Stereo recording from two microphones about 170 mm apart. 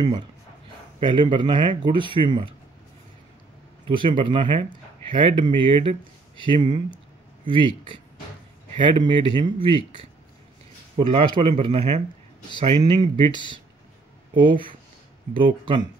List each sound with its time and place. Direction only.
0.9 s speech: 30° right (ahead or behind)
3.8 s speech: 30° right (ahead or behind)
8.7 s speech: 30° right (ahead or behind)
11.0 s speech: 30° right (ahead or behind)
13.3 s speech: 25° left (ahead or behind)
14.3 s speech: 30° right (ahead or behind)